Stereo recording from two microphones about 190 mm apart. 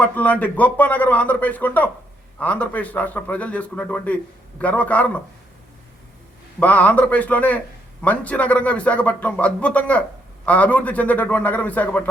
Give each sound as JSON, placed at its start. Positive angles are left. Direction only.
{"t": 0.0, "sound": "speech", "side_deg": 10}
{"t": 6.6, "sound": "speech", "side_deg": 10}